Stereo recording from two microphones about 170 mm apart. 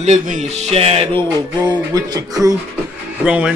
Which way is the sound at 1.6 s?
25° right (ahead or behind).